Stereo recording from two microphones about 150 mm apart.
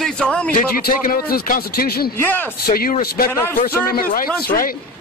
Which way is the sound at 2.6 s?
80° left.